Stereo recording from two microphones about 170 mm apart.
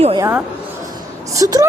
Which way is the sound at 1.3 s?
20° right (ahead or behind).